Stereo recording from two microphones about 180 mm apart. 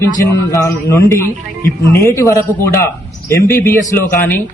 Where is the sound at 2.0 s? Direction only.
15° left (ahead or behind).